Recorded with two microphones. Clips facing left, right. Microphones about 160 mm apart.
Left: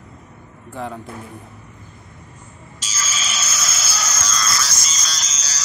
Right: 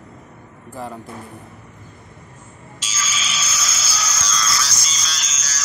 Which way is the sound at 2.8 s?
40° left (ahead or behind).